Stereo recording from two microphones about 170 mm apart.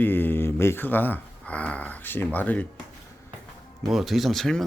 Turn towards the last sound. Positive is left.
turn(degrees=0)  # may be behind; listen again after turning